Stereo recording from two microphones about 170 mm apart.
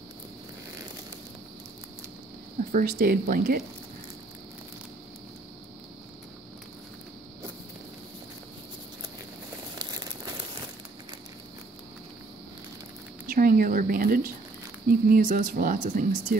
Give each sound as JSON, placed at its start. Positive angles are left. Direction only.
{"t": 2.7, "sound": "speech", "side_deg": -55}
{"t": 9.8, "sound": "crumpling", "side_deg": -20}
{"t": 13.3, "sound": "a sound", "side_deg": -55}
{"t": 14.9, "sound": "speech", "side_deg": -55}